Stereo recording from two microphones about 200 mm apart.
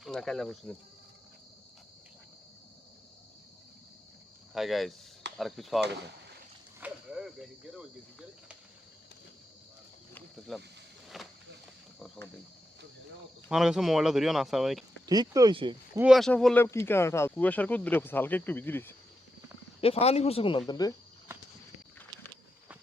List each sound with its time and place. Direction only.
0.0 s speech: centre (ahead or behind)
4.5 s speech: centre (ahead or behind)
6.7 s a sound: 5° right (ahead or behind)
10.2 s snake: centre (ahead or behind)
11.1 s walk: centre (ahead or behind)
11.9 s speech: centre (ahead or behind)
13.5 s speech: centre (ahead or behind)
15.0 s speech: 20° right (ahead or behind)
16.0 s speech: centre (ahead or behind)
19.8 s speech: 30° left (ahead or behind)